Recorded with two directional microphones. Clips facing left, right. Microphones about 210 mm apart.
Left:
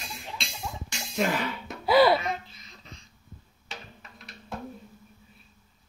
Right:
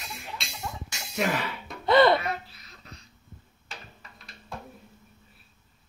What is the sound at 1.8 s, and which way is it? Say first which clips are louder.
Music: even; 5° left (ahead or behind).